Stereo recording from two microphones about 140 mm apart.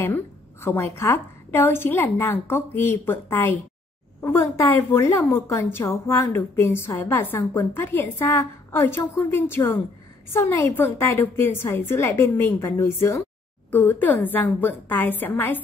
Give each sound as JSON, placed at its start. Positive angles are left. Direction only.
{"t": 0.0, "sound": "a woman's voice", "side_deg": 15}